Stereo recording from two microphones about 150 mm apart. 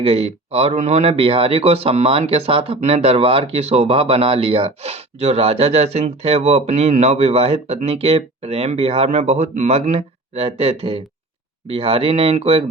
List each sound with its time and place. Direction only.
0.0 s speech: 40° right (ahead or behind)